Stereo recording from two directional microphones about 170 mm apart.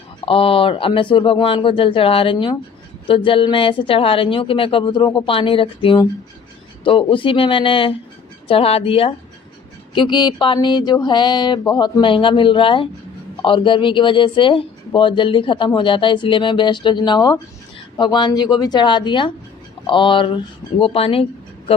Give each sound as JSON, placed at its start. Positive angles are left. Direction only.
{"t": 0.3, "sound": "a woman's voice", "side_deg": 35}